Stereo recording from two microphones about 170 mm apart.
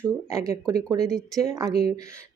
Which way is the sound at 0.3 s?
20° right (ahead or behind).